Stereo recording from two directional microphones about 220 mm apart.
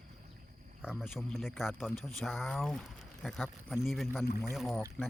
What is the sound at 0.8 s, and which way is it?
Speech, 5° right (ahead or behind).